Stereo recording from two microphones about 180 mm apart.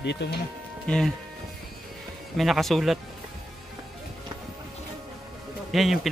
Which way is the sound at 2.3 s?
Centre (ahead or behind).